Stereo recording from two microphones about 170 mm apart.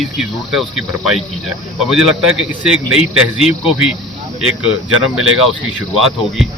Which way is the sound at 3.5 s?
35° left (ahead or behind).